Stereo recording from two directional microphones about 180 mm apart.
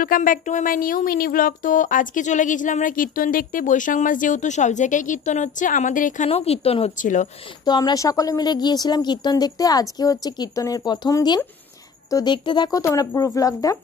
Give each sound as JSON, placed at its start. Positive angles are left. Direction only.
{"t": 0.0, "sound": "speech", "side_deg": 50}
{"t": 7.6, "sound": "speech", "side_deg": 25}